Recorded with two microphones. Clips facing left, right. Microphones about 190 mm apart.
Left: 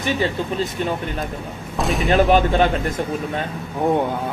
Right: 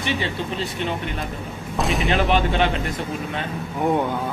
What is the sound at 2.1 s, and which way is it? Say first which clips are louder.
Speech: left 6 dB; 45° left (ahead or behind).